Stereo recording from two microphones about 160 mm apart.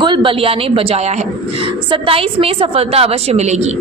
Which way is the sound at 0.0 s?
30° right (ahead or behind).